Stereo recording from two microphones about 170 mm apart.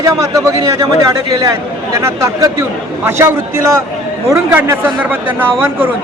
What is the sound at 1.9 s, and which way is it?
A man's voice, 15° right (ahead or behind).